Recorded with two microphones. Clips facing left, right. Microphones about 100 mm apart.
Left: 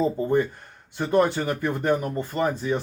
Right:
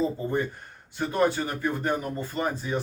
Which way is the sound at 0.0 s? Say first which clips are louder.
Left 5 dB; 55° left (ahead or behind).